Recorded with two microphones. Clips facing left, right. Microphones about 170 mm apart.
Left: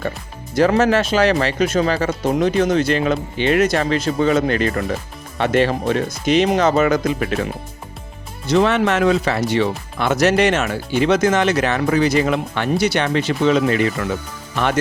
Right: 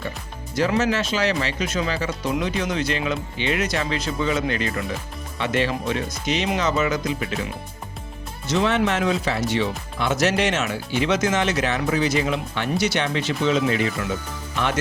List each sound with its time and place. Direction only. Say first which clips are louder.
0.5 s speech: left 6 dB; 55° left (ahead or behind)